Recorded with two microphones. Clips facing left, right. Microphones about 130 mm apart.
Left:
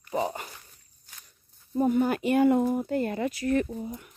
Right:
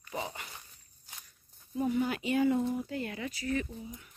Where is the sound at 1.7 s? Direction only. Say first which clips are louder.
Left 7 dB; 45° left (ahead or behind).